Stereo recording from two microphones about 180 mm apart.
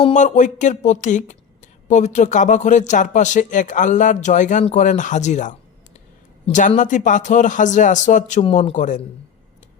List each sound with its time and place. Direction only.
0.0 s speech: 40° left (ahead or behind)